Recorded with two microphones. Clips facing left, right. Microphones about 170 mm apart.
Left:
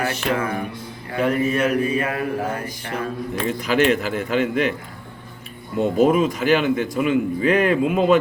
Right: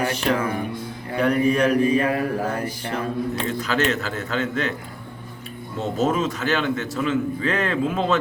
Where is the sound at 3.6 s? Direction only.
10° left (ahead or behind).